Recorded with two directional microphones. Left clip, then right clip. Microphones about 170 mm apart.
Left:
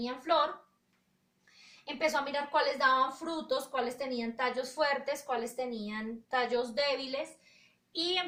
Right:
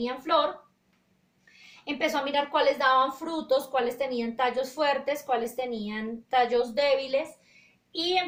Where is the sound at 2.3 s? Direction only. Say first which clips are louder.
Right 6 dB; 45° right (ahead or behind).